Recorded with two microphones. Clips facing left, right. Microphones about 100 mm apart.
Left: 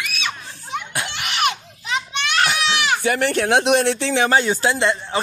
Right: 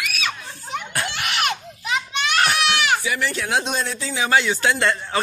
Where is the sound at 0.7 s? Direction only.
15° left (ahead or behind).